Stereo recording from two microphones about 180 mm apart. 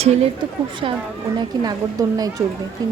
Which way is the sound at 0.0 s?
35° right (ahead or behind).